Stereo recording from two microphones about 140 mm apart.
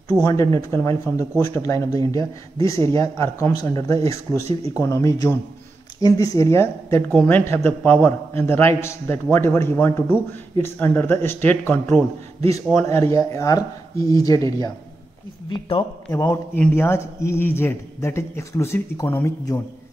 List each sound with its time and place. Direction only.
0.2 s a man's voice: 25° left (ahead or behind)
16.1 s a man's voice: 20° left (ahead or behind)